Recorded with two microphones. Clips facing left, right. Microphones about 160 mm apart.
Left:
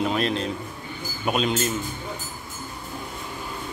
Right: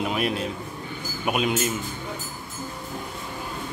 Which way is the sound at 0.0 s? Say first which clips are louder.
Left 2 dB; 10° right (ahead or behind).